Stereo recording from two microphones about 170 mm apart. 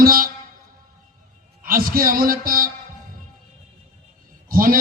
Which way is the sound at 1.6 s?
55° right (ahead or behind).